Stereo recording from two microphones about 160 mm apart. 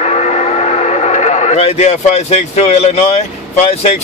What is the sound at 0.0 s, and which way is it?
Speech, 45° left (ahead or behind).